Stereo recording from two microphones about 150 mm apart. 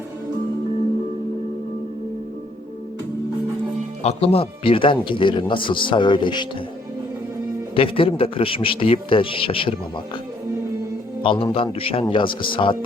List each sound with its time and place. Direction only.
4.0 s speech: 40° left (ahead or behind)
7.8 s speech: 35° left (ahead or behind)
11.2 s a man's voice: 35° left (ahead or behind)